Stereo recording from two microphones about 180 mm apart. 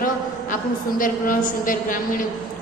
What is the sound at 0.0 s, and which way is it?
A woman's voice, 50° left (ahead or behind).